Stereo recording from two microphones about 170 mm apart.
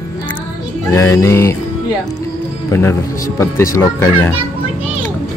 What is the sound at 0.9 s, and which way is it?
Speech, 20° left (ahead or behind).